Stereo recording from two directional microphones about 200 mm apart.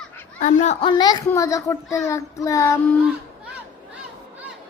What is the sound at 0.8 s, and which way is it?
A child's voice, 20° left (ahead or behind).